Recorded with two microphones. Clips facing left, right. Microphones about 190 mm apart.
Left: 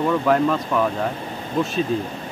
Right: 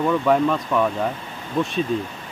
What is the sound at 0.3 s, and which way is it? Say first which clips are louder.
Speech: even; centre (ahead or behind).